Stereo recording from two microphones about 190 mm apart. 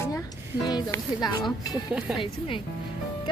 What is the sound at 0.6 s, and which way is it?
Speech, 20° left (ahead or behind).